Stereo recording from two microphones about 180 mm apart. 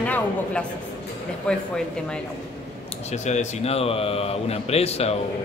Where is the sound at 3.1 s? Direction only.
40° left (ahead or behind).